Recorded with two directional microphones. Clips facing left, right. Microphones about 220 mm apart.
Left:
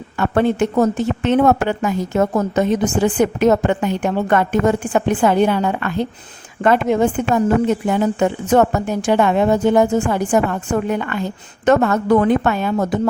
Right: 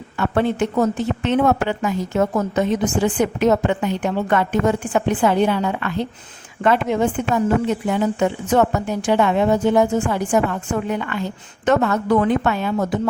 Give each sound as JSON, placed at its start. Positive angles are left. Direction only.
{"t": 0.2, "sound": "a woman's voice", "side_deg": 45}